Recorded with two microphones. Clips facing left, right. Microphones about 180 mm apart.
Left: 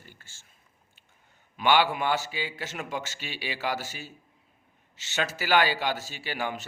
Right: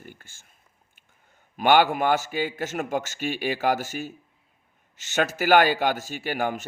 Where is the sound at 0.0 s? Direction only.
50° right (ahead or behind).